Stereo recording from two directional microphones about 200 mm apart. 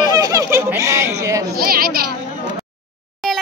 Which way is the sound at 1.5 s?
50° right (ahead or behind).